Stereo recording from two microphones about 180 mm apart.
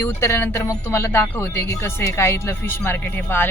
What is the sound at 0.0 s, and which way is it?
Speech, 15° left (ahead or behind).